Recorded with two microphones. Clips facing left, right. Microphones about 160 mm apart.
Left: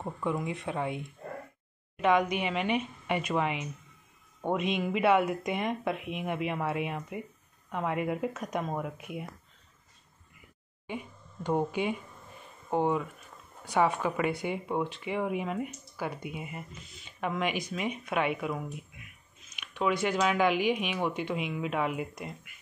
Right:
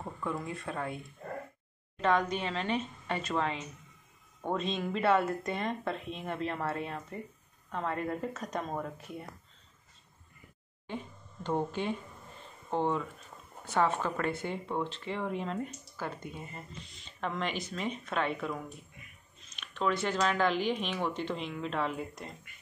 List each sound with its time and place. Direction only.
0.0 s speech: 15° left (ahead or behind)
10.9 s a sound: 10° left (ahead or behind)
13.7 s speech: 15° left (ahead or behind)